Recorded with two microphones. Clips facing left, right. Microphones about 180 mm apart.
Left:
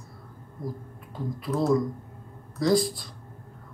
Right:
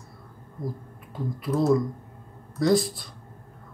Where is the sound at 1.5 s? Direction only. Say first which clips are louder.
Right 2 dB; 20° right (ahead or behind).